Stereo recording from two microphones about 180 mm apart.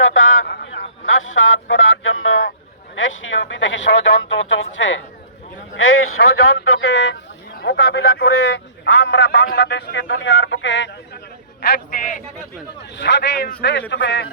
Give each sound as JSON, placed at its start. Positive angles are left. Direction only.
{"t": 0.0, "sound": "a sound", "side_deg": 90}
{"t": 1.6, "sound": "speech", "side_deg": 90}
{"t": 6.2, "sound": "a man's voice", "side_deg": 75}
{"t": 11.6, "sound": "a man's voice", "side_deg": 55}
{"t": 13.0, "sound": "a man's voice", "side_deg": 70}
{"t": 13.9, "sound": "a man's voice", "side_deg": 85}